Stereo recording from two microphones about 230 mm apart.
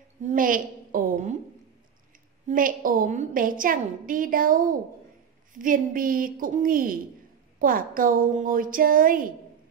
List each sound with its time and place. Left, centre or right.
0.2 s a woman's voice: right
2.4 s a woman's voice: right